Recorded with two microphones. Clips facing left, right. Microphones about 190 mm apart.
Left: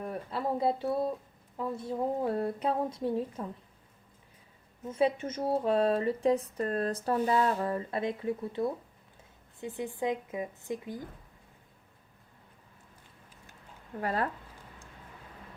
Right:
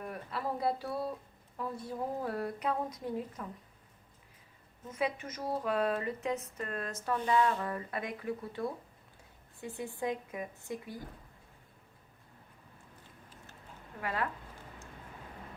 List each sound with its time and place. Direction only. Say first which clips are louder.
0.0 s speech: left 4 dB; 25° left (ahead or behind)
4.9 s speech: left 7 dB; 30° left (ahead or behind)
14.0 s speech: left 4 dB; 40° left (ahead or behind)